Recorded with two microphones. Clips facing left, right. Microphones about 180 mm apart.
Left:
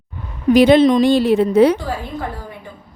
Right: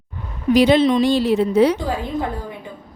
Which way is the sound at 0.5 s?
55° left (ahead or behind).